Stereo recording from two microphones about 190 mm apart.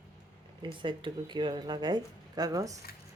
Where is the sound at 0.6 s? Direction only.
25° right (ahead or behind).